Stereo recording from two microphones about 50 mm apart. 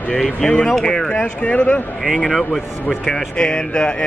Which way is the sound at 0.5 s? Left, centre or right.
Left.